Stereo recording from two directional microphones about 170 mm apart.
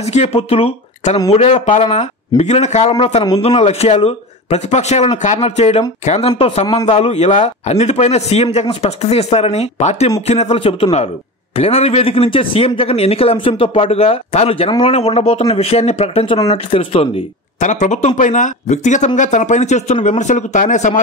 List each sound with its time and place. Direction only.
0.0 s speech: 40° left (ahead or behind)